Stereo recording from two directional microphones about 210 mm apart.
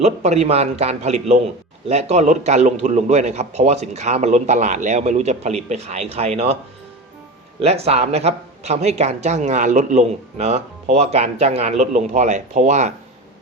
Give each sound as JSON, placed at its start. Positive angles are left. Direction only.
{"t": 0.0, "sound": "speech", "side_deg": -30}
{"t": 7.6, "sound": "speech", "side_deg": -30}